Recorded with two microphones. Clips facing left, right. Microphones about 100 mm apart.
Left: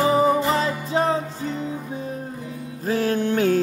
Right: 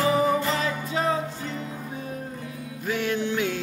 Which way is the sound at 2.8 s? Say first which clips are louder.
Left 5 dB; 35° left (ahead or behind).